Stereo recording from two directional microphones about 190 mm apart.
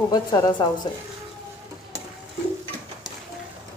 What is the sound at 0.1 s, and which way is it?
Speech, 20° left (ahead or behind).